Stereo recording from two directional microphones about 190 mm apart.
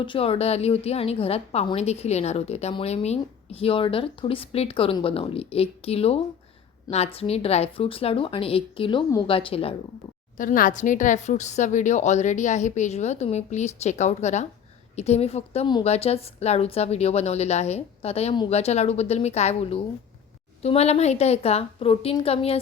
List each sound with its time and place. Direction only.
0.0 s a woman's voice: 30° left (ahead or behind)
10.3 s a woman's voice: 45° left (ahead or behind)